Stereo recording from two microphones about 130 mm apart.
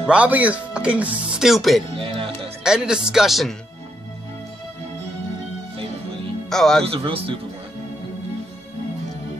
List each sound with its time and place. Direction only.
0.1 s speech: 10° right (ahead or behind)
2.0 s music: 40° right (ahead or behind)
2.6 s speech: 5° right (ahead or behind)
6.5 s speech: 5° left (ahead or behind)
7.1 s speech: 45° right (ahead or behind)